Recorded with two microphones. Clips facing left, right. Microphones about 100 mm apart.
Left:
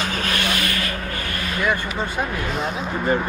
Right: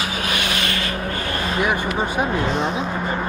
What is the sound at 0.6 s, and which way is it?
Speech, 30° right (ahead or behind).